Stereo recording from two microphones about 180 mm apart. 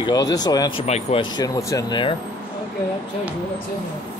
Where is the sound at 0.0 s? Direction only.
20° left (ahead or behind).